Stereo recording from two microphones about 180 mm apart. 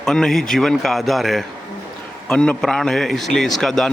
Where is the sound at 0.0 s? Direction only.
5° left (ahead or behind).